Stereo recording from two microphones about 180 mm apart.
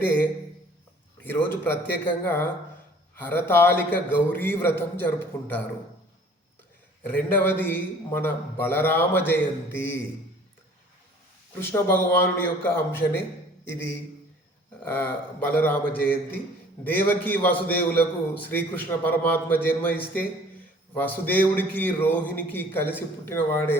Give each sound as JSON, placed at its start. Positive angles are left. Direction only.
{"t": 0.0, "sound": "a man's voice", "side_deg": 10}
{"t": 7.3, "sound": "a man's voice", "side_deg": 10}
{"t": 11.6, "sound": "a man's voice", "side_deg": 10}